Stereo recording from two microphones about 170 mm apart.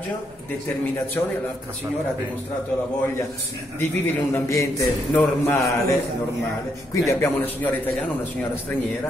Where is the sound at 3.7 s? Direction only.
15° left (ahead or behind).